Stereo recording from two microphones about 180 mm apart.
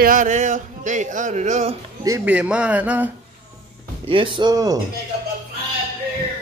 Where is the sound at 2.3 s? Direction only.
5° right (ahead or behind).